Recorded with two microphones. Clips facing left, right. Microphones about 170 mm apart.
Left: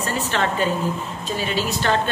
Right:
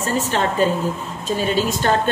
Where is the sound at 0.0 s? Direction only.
40° right (ahead or behind).